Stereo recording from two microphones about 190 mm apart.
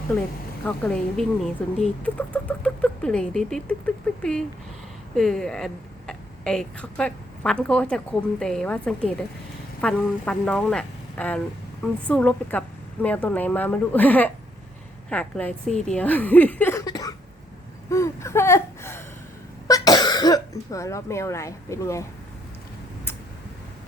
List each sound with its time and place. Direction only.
0.6 s a woman's voice: 10° left (ahead or behind)
17.8 s a sound: 15° left (ahead or behind)
19.6 s throat clearing: 20° left (ahead or behind)